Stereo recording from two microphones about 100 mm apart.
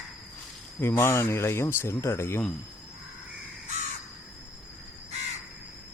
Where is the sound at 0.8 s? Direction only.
25° left (ahead or behind).